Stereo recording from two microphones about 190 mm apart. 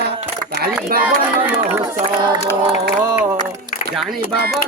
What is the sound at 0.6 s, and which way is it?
Speech, 50° right (ahead or behind).